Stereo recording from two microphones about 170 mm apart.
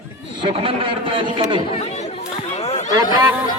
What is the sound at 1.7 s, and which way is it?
Chatter, 35° left (ahead or behind).